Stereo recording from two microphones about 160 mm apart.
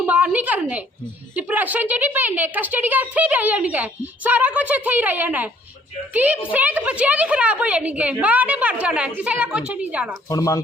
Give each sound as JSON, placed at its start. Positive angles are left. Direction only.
{"t": 0.0, "sound": "a sound", "side_deg": -10}
{"t": 1.4, "sound": "a woman's voice", "side_deg": -10}
{"t": 6.5, "sound": "a woman's voice", "side_deg": -10}
{"t": 10.2, "sound": "speech", "side_deg": 20}